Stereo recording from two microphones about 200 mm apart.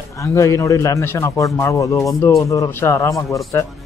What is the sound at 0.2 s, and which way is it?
Speech, 15° left (ahead or behind).